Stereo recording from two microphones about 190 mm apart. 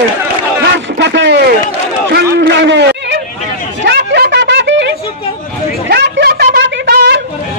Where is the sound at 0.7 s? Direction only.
65° right (ahead or behind).